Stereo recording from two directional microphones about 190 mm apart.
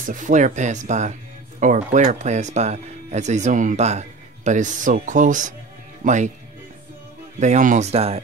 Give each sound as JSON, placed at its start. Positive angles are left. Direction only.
{"t": 0.0, "sound": "speech", "side_deg": -40}
{"t": 7.3, "sound": "speech", "side_deg": -40}